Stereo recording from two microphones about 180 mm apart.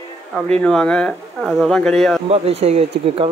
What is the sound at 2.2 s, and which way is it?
Speech, 35° right (ahead or behind).